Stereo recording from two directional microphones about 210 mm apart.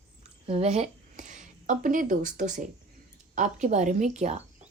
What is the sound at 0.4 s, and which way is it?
Speech, 30° right (ahead or behind).